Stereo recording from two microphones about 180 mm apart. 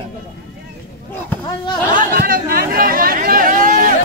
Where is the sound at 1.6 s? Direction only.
25° left (ahead or behind).